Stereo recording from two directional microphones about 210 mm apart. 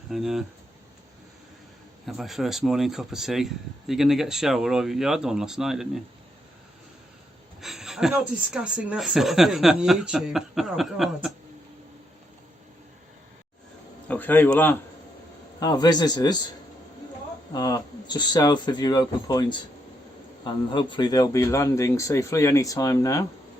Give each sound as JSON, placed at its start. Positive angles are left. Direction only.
{"t": 0.1, "sound": "speech", "side_deg": 0}
{"t": 2.0, "sound": "speech", "side_deg": 0}
{"t": 7.6, "sound": "speech", "side_deg": 0}
{"t": 14.1, "sound": "speech", "side_deg": 10}
{"t": 17.5, "sound": "speech", "side_deg": 15}